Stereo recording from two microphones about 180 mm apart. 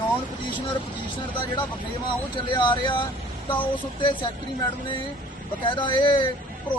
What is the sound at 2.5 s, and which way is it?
Speech, 25° left (ahead or behind).